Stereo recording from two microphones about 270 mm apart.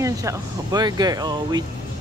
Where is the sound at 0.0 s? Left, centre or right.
Centre.